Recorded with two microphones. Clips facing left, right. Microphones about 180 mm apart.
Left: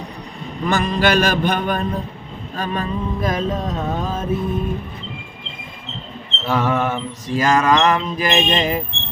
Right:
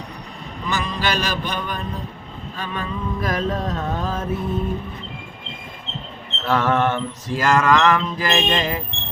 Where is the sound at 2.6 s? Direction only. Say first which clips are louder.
Left 5 dB; 40° left (ahead or behind).